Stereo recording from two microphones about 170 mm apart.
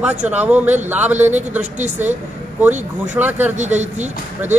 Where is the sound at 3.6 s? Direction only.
45° right (ahead or behind).